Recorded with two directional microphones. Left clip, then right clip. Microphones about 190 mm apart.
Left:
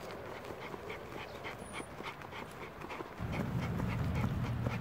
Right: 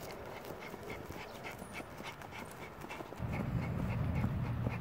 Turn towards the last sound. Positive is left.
turn(degrees=0)  # may be behind; listen again after turning